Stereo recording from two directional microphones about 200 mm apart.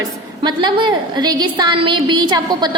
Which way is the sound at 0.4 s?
20° right (ahead or behind).